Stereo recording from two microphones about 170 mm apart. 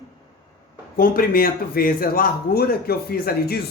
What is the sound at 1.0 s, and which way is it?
A man's voice, 60° left (ahead or behind).